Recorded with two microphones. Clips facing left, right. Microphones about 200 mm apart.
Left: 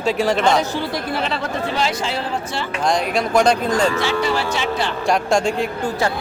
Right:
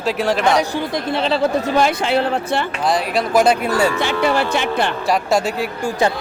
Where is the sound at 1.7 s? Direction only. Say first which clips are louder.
Right 6 dB; 55° right (ahead or behind).